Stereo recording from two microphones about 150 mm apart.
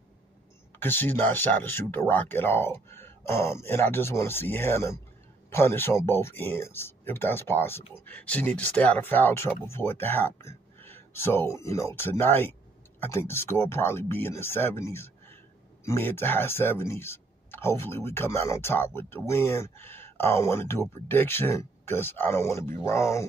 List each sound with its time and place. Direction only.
0.7 s speech: 15° left (ahead or behind)